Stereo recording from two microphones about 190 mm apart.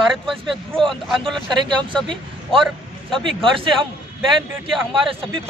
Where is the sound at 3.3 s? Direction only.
30° right (ahead or behind).